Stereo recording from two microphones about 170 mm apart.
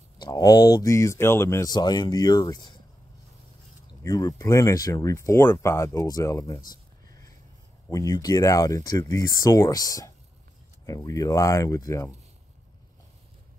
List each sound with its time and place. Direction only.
0.2 s speech: 20° left (ahead or behind)
4.0 s speech: 20° left (ahead or behind)
7.9 s speech: 20° left (ahead or behind)